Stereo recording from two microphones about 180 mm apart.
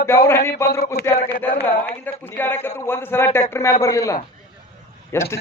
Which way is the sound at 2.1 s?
10° left (ahead or behind).